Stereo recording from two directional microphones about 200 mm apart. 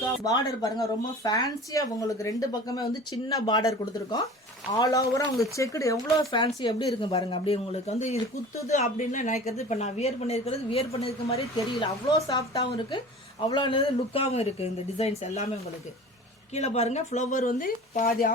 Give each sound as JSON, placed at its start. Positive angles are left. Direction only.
{"t": 0.3, "sound": "speech", "side_deg": 15}
{"t": 4.7, "sound": "a woman's voice", "side_deg": 15}
{"t": 16.6, "sound": "a woman's voice", "side_deg": 30}